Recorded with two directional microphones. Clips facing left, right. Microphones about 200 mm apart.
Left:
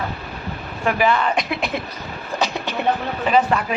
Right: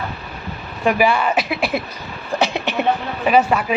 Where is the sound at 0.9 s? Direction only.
10° right (ahead or behind).